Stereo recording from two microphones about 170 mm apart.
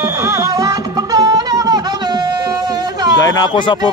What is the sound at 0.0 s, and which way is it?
Music, 20° right (ahead or behind).